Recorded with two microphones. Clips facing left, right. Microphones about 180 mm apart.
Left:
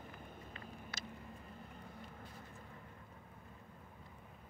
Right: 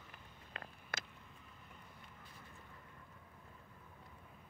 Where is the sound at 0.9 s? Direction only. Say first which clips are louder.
Right 6 dB; 50° right (ahead or behind).